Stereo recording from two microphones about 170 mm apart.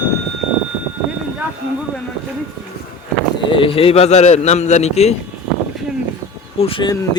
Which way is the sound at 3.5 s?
30° left (ahead or behind).